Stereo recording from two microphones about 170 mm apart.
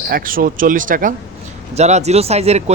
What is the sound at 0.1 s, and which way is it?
Speech, 55° right (ahead or behind).